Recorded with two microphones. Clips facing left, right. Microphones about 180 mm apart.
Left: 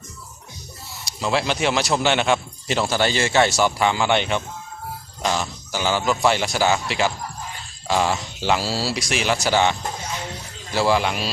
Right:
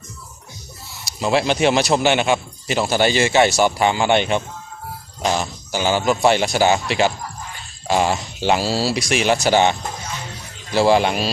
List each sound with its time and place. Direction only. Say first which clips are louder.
1.2 s speech: right 4 dB; 20° right (ahead or behind)
10.8 s speech: right 5 dB; 25° right (ahead or behind)